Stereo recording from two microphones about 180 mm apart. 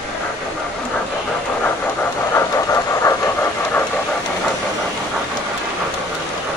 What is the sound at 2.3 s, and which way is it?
Steam, 15° left (ahead or behind).